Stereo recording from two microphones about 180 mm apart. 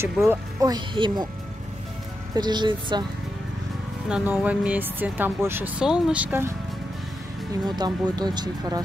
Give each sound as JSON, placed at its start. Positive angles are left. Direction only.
{"t": 0.0, "sound": "speech", "side_deg": -15}
{"t": 2.3, "sound": "speech", "side_deg": -25}
{"t": 4.1, "sound": "speech", "side_deg": -5}
{"t": 7.6, "sound": "speech", "side_deg": -25}